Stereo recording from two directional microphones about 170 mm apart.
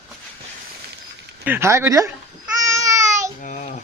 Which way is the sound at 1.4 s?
15° right (ahead or behind).